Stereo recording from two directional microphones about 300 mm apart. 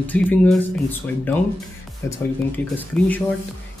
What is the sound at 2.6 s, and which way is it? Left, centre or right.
Speech, centre.